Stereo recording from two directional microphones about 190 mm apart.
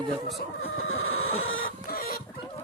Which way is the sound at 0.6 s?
90° left.